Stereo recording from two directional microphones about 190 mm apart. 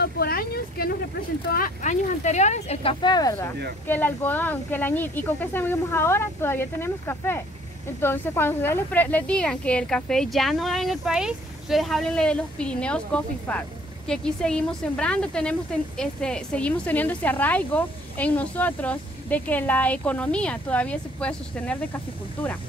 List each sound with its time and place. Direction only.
0.0 s speech: 55° left (ahead or behind); by 21.7 s 5° left (ahead or behind)